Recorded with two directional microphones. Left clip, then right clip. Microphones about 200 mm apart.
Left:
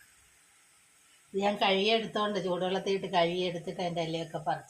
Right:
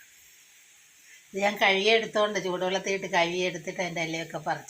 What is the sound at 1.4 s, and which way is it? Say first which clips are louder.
A woman's voice: right 4 dB; 20° right (ahead or behind).